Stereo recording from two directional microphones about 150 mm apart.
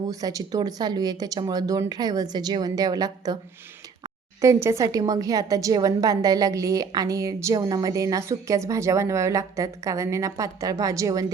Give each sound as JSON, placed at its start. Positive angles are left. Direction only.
{"t": 0.1, "sound": "a woman's voice", "side_deg": -25}
{"t": 4.4, "sound": "a woman's voice", "side_deg": -20}